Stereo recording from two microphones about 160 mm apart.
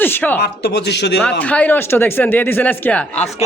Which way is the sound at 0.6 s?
90° left.